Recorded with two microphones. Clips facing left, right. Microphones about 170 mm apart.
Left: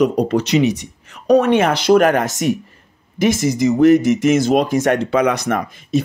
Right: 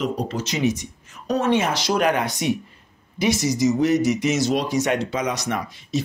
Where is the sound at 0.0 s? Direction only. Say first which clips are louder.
Left 10 dB; 65° left (ahead or behind).